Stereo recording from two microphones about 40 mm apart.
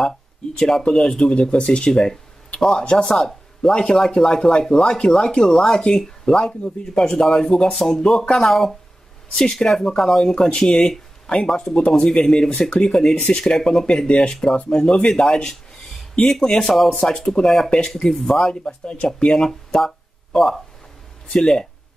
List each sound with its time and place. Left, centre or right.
0.6 s speech: centre
0.8 s speech: left
1.9 s a sound: centre
2.7 s speech: left; by 18.4 s centre
18.4 s speech: left
20.3 s speech: centre